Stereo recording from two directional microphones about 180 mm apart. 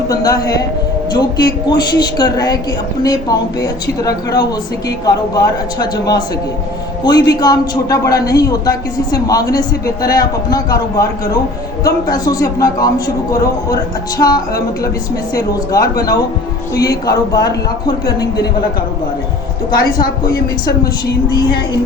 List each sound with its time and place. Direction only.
0.1 s speech: 20° left (ahead or behind)
14.2 s speech: 20° left (ahead or behind)
16.9 s speech: 65° left (ahead or behind)
19.7 s speech: 55° left (ahead or behind)
20.3 s speech: 20° left (ahead or behind)